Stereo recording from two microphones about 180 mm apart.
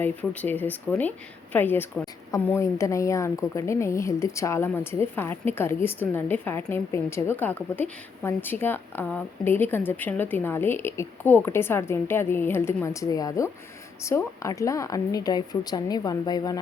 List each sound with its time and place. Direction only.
0.0 s a woman's voice: 10° left (ahead or behind)